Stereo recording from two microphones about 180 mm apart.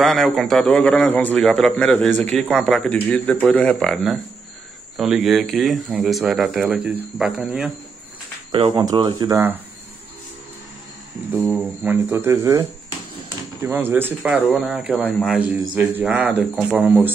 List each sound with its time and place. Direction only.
0.0 s a man's voice: centre (ahead or behind)
8.5 s speech: 30° right (ahead or behind)
11.4 s a man's voice: 10° right (ahead or behind)